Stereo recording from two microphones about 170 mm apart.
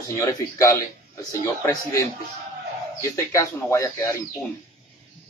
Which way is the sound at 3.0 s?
20° left (ahead or behind).